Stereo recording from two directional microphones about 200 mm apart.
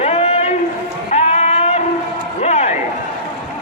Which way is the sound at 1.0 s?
35° left (ahead or behind).